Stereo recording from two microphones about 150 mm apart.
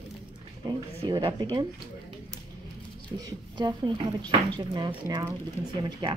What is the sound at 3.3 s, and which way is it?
Speech, 30° right (ahead or behind).